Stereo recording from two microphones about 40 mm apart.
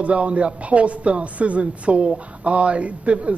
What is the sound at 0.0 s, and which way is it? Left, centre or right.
A man's voice, right.